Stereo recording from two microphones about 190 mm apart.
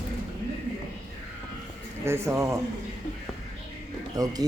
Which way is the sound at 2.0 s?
15° right (ahead or behind).